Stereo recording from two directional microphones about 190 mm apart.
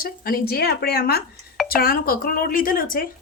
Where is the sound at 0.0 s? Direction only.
50° left (ahead or behind).